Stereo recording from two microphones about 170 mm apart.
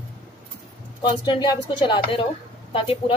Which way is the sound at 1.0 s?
25° left (ahead or behind).